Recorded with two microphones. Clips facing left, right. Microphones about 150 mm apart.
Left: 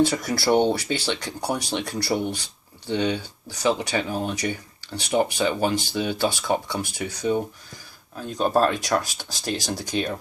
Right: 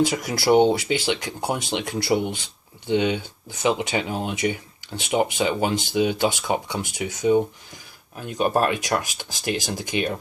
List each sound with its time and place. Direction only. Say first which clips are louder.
0.0 s speech: even; 20° right (ahead or behind)
8.5 s speech: left 4 dB; 15° right (ahead or behind)